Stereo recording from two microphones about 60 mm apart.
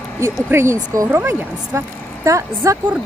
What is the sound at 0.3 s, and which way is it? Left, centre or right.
Speech, right.